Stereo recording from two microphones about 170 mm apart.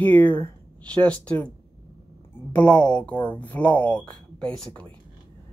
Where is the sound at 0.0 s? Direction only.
10° left (ahead or behind).